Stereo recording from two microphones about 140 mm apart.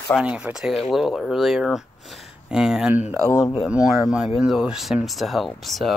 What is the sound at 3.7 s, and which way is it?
Speech, 5° right (ahead or behind).